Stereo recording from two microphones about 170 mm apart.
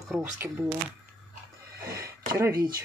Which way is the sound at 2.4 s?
15° right (ahead or behind).